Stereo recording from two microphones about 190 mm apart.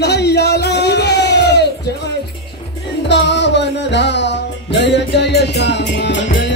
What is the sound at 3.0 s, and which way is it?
Music, 65° left (ahead or behind).